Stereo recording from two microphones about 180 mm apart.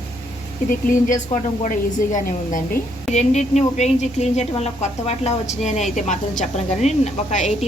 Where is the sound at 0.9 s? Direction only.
45° left (ahead or behind).